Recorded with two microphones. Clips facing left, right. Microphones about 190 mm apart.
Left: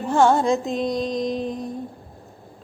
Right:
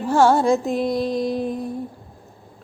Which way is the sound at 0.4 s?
20° left (ahead or behind).